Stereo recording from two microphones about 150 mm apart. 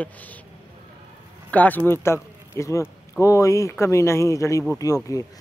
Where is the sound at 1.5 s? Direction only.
10° left (ahead or behind).